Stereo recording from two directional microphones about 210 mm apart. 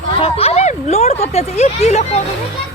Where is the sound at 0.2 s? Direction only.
25° left (ahead or behind).